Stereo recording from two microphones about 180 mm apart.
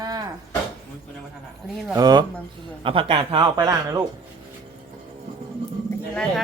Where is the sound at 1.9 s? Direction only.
20° right (ahead or behind).